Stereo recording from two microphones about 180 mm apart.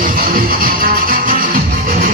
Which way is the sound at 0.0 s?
50° right (ahead or behind).